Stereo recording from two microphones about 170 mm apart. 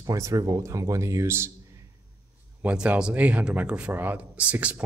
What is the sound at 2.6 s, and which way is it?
A man's voice, 5° right (ahead or behind).